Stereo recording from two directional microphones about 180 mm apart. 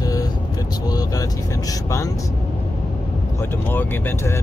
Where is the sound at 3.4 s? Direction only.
10° left (ahead or behind).